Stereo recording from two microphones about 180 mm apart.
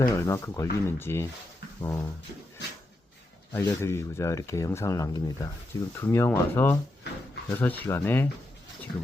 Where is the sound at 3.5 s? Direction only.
15° left (ahead or behind).